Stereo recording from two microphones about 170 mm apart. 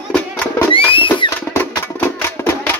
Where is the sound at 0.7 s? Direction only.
30° left (ahead or behind).